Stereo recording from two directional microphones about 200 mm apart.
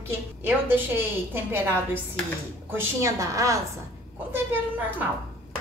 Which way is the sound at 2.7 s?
15° right (ahead or behind).